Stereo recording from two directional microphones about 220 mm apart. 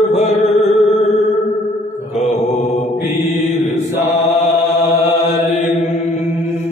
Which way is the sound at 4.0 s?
30° left (ahead or behind).